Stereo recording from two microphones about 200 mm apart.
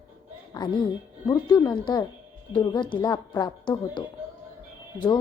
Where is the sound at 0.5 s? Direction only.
20° left (ahead or behind).